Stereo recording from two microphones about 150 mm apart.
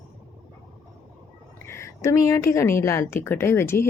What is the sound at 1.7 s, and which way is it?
A woman's voice, 20° left (ahead or behind).